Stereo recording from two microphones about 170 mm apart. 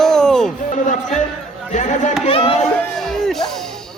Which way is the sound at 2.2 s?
35° left (ahead or behind).